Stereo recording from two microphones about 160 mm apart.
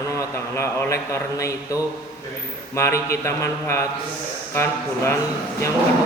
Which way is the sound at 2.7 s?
20° left (ahead or behind).